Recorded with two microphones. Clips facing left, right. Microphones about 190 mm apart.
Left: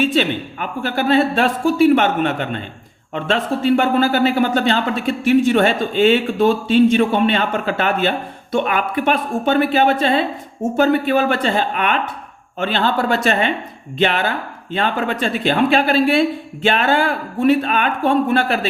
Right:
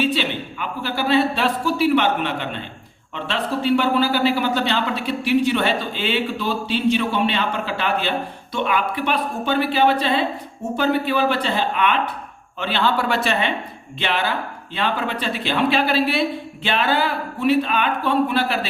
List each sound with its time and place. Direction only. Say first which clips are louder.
0.0 s speech: left 4 dB; 45° left (ahead or behind)